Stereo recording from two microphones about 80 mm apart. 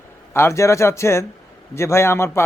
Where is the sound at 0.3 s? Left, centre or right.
Left.